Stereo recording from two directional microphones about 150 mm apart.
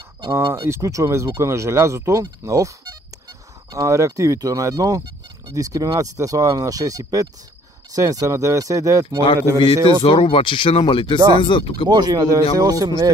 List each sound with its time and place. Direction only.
0.3 s speech: 20° right (ahead or behind)
3.7 s speech: 20° right (ahead or behind)
10.0 s speech: 35° left (ahead or behind)
11.9 s speech: 30° right (ahead or behind)